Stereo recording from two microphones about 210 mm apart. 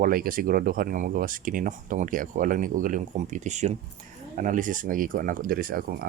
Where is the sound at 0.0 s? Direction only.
40° right (ahead or behind).